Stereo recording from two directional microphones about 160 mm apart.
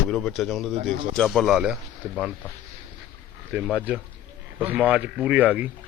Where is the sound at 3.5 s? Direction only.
5° right (ahead or behind).